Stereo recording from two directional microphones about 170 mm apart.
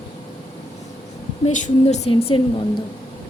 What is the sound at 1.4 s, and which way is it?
Speech, 45° left (ahead or behind).